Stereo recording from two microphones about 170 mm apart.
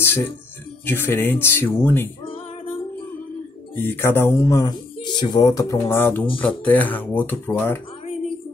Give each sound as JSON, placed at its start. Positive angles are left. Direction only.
{"t": 0.0, "sound": "a sound", "side_deg": 15}
{"t": 0.8, "sound": "speech", "side_deg": 10}
{"t": 2.2, "sound": "music", "side_deg": 30}
{"t": 3.7, "sound": "speech", "side_deg": 10}